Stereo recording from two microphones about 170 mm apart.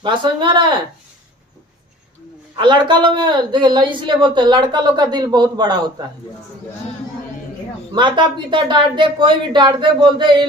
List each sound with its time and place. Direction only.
0.0 s speech: 30° right (ahead or behind)
2.6 s speech: 25° right (ahead or behind)
7.9 s speech: 25° right (ahead or behind)